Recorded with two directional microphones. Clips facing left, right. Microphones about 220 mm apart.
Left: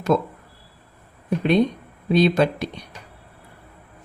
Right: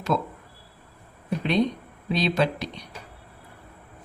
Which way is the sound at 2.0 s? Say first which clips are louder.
Left 6 dB; 50° left (ahead or behind).